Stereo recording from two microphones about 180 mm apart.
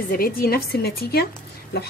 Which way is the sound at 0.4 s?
60° left (ahead or behind).